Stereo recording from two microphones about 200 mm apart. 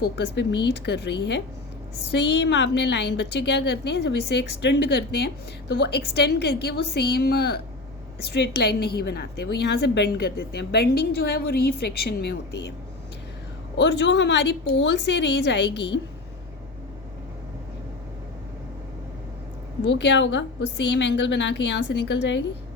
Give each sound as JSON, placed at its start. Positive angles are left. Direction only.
{"t": 0.0, "sound": "a woman's voice", "side_deg": 55}
{"t": 13.7, "sound": "a woman's voice", "side_deg": 60}
{"t": 19.8, "sound": "a woman's voice", "side_deg": 60}